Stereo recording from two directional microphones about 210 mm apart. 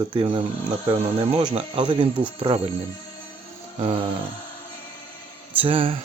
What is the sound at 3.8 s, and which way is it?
Speech, 25° right (ahead or behind).